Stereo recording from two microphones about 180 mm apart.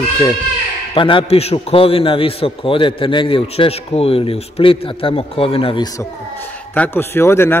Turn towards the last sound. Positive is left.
turn(degrees=15)  # may be behind; listen again after turning